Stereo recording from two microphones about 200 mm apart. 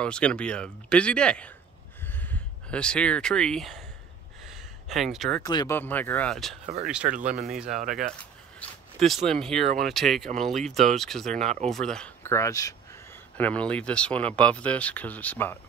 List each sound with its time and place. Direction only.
0.0 s speech: 5° left (ahead or behind)
4.8 s speech: centre (ahead or behind)
5.4 s speech: 20° left (ahead or behind); by 6.5 s 5° left (ahead or behind)
6.6 s speech: 35° right (ahead or behind)
7.4 s speech: centre (ahead or behind)
8.0 s a sound: 5° left (ahead or behind)
9.3 s speech: centre (ahead or behind)
9.6 s speech: 35° right (ahead or behind)
9.8 s speech: centre (ahead or behind); by 12.7 s 15° left (ahead or behind)
13.4 s speech: 5° left (ahead or behind)